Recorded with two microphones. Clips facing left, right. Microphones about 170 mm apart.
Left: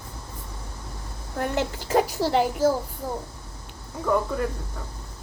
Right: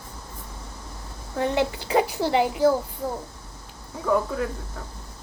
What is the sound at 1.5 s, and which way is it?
Speech, 65° right (ahead or behind).